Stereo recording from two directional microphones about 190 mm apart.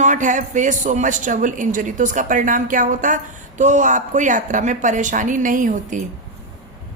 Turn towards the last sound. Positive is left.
turn(degrees=-45)  # may be behind; listen again after turning